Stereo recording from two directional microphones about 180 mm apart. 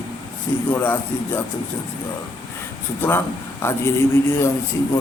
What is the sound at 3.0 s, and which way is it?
Speech, 10° left (ahead or behind).